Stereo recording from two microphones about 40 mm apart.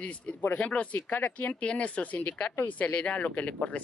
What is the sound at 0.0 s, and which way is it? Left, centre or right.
Speech, left.